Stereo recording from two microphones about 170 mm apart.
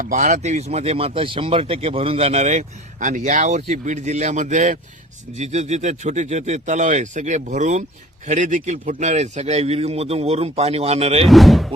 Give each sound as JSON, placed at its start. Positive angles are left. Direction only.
{"t": 0.0, "sound": "speech", "side_deg": -50}
{"t": 11.3, "sound": "speech", "side_deg": 0}